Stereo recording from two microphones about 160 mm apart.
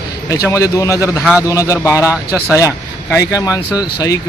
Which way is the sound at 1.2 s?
5° right (ahead or behind).